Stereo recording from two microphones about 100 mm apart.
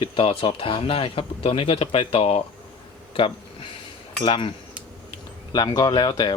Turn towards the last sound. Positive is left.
turn(degrees=45)  # may be behind; listen again after turning